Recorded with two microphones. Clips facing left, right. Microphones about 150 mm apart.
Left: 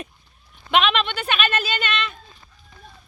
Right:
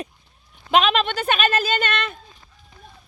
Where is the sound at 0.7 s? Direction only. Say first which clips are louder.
Right 2 dB; 40° right (ahead or behind).